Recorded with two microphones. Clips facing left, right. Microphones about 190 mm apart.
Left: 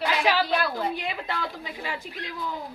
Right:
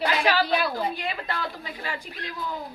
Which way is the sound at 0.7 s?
20° left (ahead or behind).